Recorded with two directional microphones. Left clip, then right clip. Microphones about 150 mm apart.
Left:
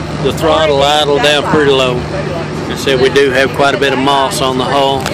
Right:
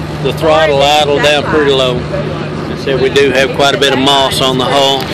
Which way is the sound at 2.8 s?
30° left (ahead or behind).